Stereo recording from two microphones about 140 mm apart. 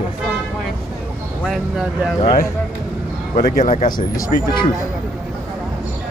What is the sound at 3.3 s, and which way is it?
Speech, 75° left (ahead or behind).